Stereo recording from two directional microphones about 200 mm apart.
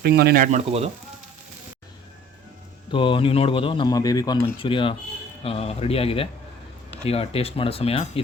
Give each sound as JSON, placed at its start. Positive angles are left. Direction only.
{"t": 0.0, "sound": "speech", "side_deg": -50}
{"t": 2.9, "sound": "speech", "side_deg": 25}